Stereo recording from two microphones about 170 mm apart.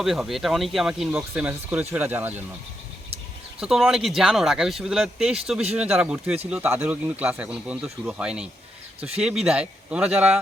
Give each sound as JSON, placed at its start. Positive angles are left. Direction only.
{"t": 0.0, "sound": "speech", "side_deg": 0}
{"t": 3.6, "sound": "speech", "side_deg": 0}
{"t": 9.0, "sound": "speech", "side_deg": -35}
{"t": 9.2, "sound": "speech", "side_deg": -5}